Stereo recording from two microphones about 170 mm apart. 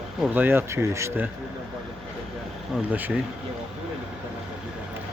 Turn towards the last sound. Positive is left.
turn(degrees=-10)  # may be behind; listen again after turning